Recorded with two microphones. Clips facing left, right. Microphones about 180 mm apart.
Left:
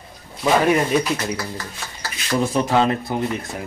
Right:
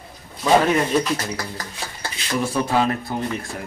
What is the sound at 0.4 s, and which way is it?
Speech, 10° left (ahead or behind).